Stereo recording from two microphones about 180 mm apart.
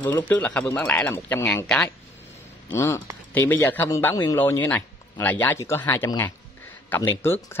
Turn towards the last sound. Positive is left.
turn(degrees=15)  # may be behind; listen again after turning